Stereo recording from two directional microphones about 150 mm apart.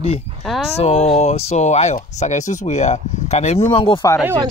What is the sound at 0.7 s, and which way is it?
Speech, 45° left (ahead or behind).